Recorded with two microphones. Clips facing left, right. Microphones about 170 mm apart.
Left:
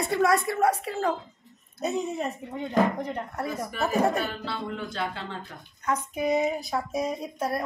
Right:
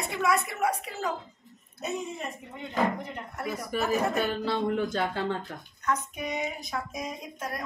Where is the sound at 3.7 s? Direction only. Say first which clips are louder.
Left 2 dB; 40° right (ahead or behind).